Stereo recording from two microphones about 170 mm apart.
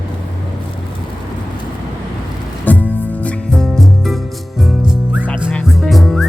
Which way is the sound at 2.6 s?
10° left (ahead or behind).